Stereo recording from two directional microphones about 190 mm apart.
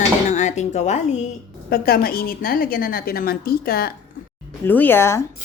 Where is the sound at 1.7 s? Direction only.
55° left (ahead or behind).